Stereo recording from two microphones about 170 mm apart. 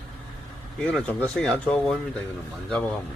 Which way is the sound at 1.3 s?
5° left (ahead or behind).